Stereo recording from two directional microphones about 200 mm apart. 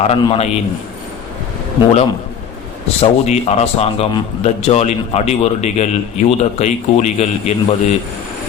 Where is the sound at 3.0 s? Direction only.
35° left (ahead or behind).